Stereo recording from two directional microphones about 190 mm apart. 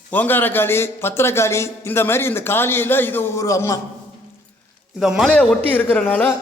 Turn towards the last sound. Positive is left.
turn(degrees=10)  # may be behind; listen again after turning